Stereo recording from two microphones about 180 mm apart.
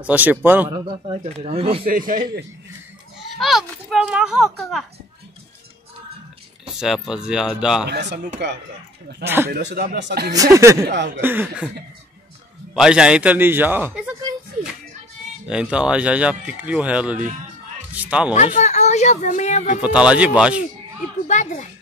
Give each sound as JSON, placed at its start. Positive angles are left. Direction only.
{"t": 0.0, "sound": "speech", "side_deg": -10}
{"t": 0.7, "sound": "a man's voice", "side_deg": -25}
{"t": 1.9, "sound": "a man's voice", "side_deg": -50}
{"t": 3.3, "sound": "speech", "side_deg": 0}
{"t": 6.6, "sound": "speech", "side_deg": -5}
{"t": 7.9, "sound": "speech", "side_deg": -75}
{"t": 9.2, "sound": "speech", "side_deg": -10}
{"t": 9.5, "sound": "speech", "side_deg": -60}
{"t": 10.3, "sound": "speech", "side_deg": -20}
{"t": 12.7, "sound": "speech", "side_deg": -5}
{"t": 15.4, "sound": "speech", "side_deg": -5}
{"t": 18.3, "sound": "speech", "side_deg": 40}
{"t": 19.8, "sound": "speech", "side_deg": -5}
{"t": 21.3, "sound": "speech", "side_deg": 40}